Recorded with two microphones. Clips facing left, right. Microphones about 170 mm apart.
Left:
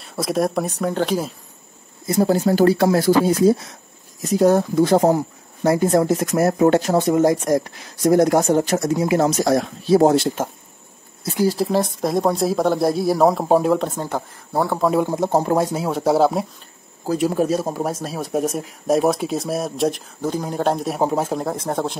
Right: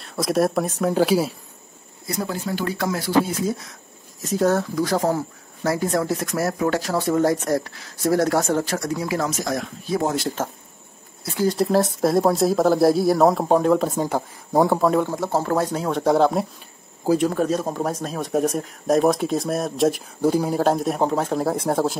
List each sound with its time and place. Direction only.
0.0 s speech: centre (ahead or behind)
2.0 s speech: 30° left (ahead or behind)
4.4 s speech: 15° left (ahead or behind)
4.7 s speech: 25° left (ahead or behind)
9.3 s speech: 35° left (ahead or behind)
11.4 s speech: centre (ahead or behind)
13.7 s speech: 10° right (ahead or behind)
14.8 s speech: 5° left (ahead or behind)
15.0 s speech: 20° left (ahead or behind)
21.4 s speech: 5° right (ahead or behind)